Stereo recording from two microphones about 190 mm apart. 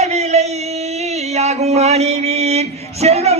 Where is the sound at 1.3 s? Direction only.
35° right (ahead or behind).